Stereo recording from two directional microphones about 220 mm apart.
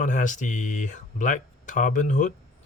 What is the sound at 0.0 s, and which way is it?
Speech, 35° left (ahead or behind).